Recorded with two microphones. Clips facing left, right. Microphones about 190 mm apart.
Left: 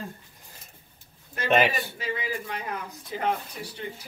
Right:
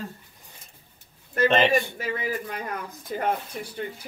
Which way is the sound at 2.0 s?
50° right (ahead or behind).